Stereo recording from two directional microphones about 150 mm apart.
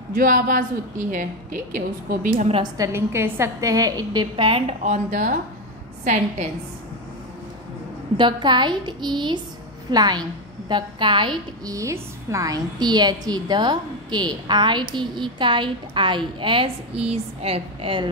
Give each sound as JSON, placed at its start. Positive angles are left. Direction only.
{"t": 0.1, "sound": "a woman's voice", "side_deg": -70}
{"t": 2.6, "sound": "a woman's voice", "side_deg": -20}
{"t": 8.2, "sound": "a woman's voice", "side_deg": -30}